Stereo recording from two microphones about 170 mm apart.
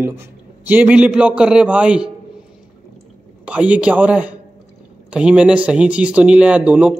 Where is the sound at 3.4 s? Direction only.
5° right (ahead or behind).